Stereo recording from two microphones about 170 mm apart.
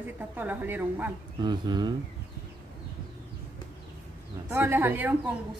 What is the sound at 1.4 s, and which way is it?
Speech, 25° right (ahead or behind).